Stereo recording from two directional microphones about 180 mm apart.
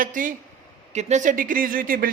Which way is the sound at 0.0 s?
45° right (ahead or behind).